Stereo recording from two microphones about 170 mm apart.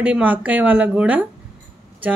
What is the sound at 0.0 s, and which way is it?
Speech, 10° right (ahead or behind).